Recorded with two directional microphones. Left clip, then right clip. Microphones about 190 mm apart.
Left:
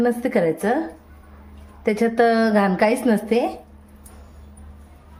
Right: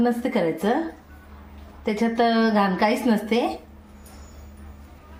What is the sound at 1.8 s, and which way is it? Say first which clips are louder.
A woman's voice: left 4 dB; 45° left (ahead or behind).